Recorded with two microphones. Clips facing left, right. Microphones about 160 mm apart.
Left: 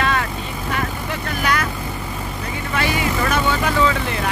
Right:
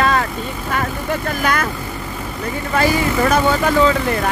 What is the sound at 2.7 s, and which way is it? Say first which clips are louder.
Speech: right 5 dB; 40° right (ahead or behind).